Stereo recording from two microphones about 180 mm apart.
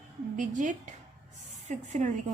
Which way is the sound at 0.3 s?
45° right (ahead or behind).